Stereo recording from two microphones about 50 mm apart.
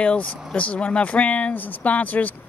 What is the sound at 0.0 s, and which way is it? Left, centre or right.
Speech, left.